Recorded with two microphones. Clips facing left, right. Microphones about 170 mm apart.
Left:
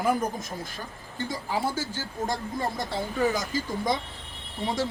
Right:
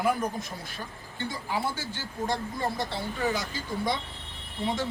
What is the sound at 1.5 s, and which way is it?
Speech, 45° left (ahead or behind).